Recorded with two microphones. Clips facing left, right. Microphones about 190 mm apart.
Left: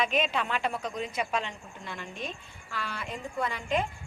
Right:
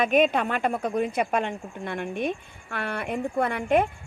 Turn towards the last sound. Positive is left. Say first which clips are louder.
# right 7 dB
turn(degrees=-60)  # may be behind; listen again after turning